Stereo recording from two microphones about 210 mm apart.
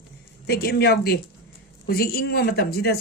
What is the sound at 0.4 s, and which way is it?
Speech, 50° left (ahead or behind).